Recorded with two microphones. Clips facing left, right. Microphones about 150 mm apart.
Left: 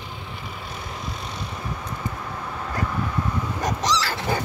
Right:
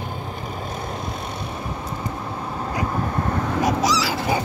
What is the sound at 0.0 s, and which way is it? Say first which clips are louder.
Vehicle: right 6 dB; 45° right (ahead or behind).